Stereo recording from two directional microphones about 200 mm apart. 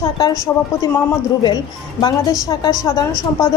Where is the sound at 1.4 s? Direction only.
20° left (ahead or behind).